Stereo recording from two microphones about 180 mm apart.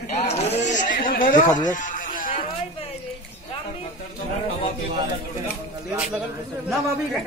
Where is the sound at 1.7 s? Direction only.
45° left (ahead or behind).